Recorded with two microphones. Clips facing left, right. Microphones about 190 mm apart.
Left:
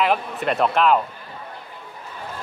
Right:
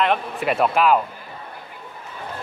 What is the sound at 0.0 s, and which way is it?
Speech, centre (ahead or behind).